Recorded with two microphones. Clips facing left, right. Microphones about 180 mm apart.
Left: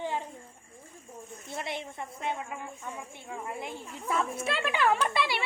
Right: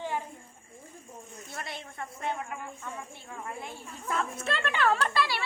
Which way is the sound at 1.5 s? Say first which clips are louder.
Left 4 dB; 20° left (ahead or behind).